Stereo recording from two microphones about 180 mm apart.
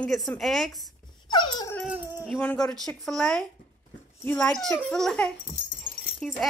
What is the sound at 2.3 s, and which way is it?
Speech, 5° left (ahead or behind).